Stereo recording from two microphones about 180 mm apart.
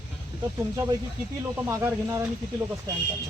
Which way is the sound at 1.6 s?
15° right (ahead or behind).